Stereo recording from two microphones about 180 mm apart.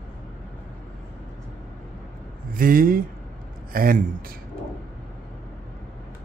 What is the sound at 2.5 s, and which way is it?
A man's voice, 50° right (ahead or behind).